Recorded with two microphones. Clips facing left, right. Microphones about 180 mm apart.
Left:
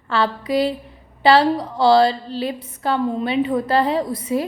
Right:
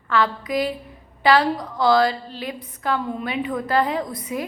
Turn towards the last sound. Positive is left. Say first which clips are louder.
# left 5 dB
turn(degrees=30)  # may be behind; listen again after turning